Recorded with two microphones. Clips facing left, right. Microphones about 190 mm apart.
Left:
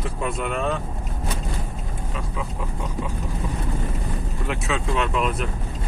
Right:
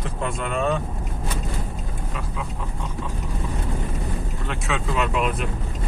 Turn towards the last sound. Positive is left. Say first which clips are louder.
# even
turn(degrees=-5)  # may be behind; listen again after turning